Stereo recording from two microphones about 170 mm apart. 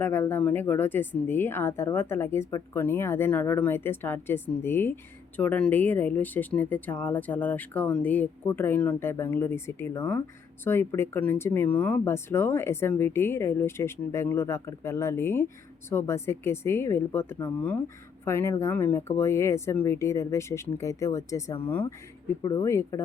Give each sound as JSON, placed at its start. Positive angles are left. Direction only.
{"t": 0.0, "sound": "speech", "side_deg": 10}